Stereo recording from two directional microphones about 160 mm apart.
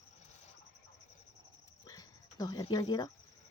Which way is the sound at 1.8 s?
25° left (ahead or behind).